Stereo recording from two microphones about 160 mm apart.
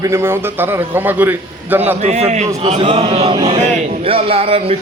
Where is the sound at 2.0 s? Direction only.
45° right (ahead or behind).